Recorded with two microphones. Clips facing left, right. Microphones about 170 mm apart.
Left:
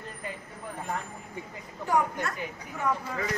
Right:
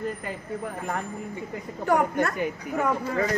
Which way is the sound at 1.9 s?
60° right (ahead or behind).